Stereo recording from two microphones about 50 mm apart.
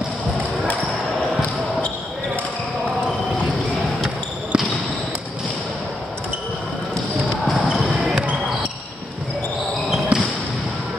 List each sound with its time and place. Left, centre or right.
4.5 s basketball bounce: centre
10.1 s basketball bounce: centre